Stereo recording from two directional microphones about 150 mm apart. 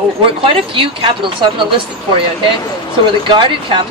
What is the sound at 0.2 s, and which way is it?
Speech, 35° right (ahead or behind).